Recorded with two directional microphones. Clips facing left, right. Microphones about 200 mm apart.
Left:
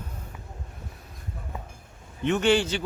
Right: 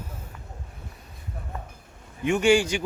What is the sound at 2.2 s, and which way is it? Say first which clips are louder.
Speech: right 2 dB; 10° right (ahead or behind).